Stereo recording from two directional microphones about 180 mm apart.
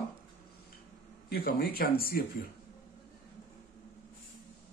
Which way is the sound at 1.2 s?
60° left (ahead or behind).